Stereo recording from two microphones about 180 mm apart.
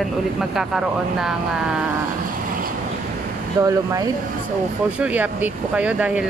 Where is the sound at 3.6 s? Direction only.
20° right (ahead or behind).